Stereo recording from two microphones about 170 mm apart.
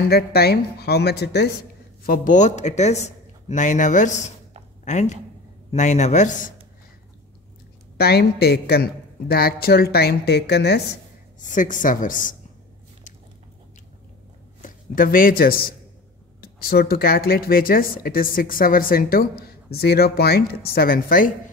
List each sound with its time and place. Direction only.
0.1 s a woman's voice: 65° left (ahead or behind); by 6.5 s 45° left (ahead or behind)
8.0 s a woman's voice: 70° left (ahead or behind)
11.3 s a woman's voice: 50° left (ahead or behind)
14.6 s speech: 55° left (ahead or behind)